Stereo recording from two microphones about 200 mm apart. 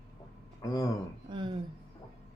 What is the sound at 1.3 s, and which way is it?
Speech, 25° right (ahead or behind).